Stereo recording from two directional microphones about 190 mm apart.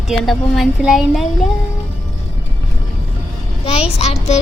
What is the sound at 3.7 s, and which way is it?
Speech, 30° left (ahead or behind).